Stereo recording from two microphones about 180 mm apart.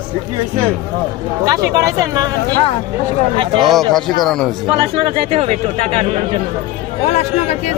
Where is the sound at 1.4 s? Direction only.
20° right (ahead or behind).